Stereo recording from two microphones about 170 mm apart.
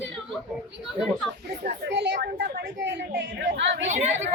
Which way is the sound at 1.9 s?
90° right.